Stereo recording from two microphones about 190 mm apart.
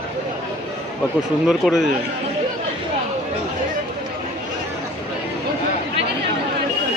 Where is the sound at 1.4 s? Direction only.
Centre (ahead or behind).